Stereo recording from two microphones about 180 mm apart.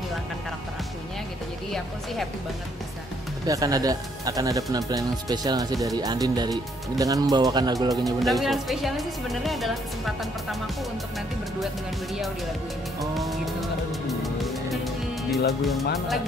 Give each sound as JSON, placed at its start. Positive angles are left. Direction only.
{"t": 3.4, "sound": "speech", "side_deg": -20}
{"t": 7.9, "sound": "speech", "side_deg": 0}
{"t": 13.1, "sound": "music", "side_deg": 0}
{"t": 15.6, "sound": "speech", "side_deg": 0}